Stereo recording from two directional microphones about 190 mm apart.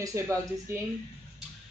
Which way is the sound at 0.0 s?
15° right (ahead or behind).